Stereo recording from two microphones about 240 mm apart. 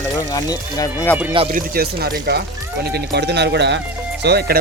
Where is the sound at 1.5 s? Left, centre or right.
Right.